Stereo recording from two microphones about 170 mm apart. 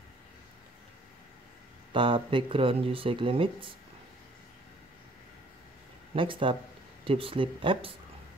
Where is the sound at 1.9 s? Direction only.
30° right (ahead or behind).